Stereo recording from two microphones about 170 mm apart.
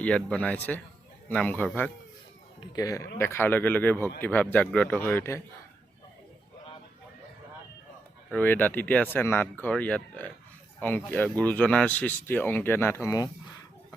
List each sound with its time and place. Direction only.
0.0 s speech: 5° left (ahead or behind)
2.6 s speech: 20° left (ahead or behind)
8.3 s speech: 10° left (ahead or behind)